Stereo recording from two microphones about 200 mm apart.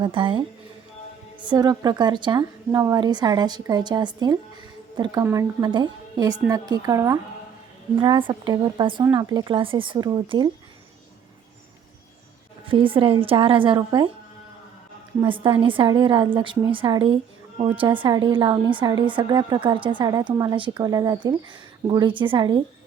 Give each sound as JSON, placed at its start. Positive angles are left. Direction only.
{"t": 0.0, "sound": "a woman's voice", "side_deg": -25}
{"t": 12.6, "sound": "a woman's voice", "side_deg": -25}
{"t": 15.2, "sound": "a woman's voice", "side_deg": -25}